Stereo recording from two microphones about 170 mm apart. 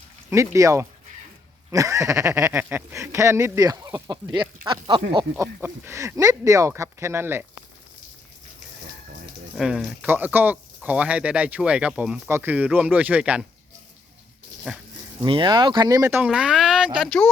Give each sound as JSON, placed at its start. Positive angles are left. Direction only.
{"t": 0.3, "sound": "speech", "side_deg": -20}
{"t": 5.5, "sound": "speech", "side_deg": -10}
{"t": 9.6, "sound": "speech", "side_deg": 0}
{"t": 15.2, "sound": "speech", "side_deg": -25}